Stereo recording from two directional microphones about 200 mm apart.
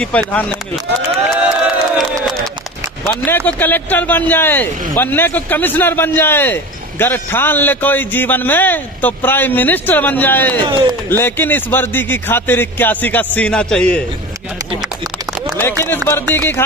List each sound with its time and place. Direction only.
0.0 s speech: 5° left (ahead or behind)
1.4 s crowd: 5° right (ahead or behind)
3.0 s speech: 10° left (ahead or behind)
10.7 s speech: 20° right (ahead or behind)
11.1 s speech: 10° left (ahead or behind)
16.0 s speech: 10° left (ahead or behind)